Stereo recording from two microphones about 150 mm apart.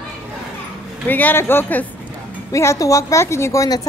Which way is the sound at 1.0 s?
10° left (ahead or behind).